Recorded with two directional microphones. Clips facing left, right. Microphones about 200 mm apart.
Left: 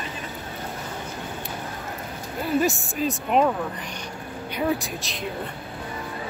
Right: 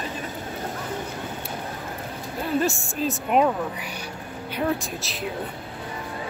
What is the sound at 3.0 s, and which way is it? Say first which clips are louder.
Speech: even; 5° right (ahead or behind).